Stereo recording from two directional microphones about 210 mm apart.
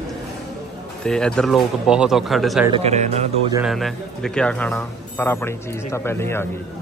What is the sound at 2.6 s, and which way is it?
Speech, 25° right (ahead or behind).